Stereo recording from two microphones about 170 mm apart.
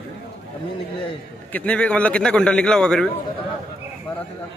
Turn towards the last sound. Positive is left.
turn(degrees=5)  # may be behind; listen again after turning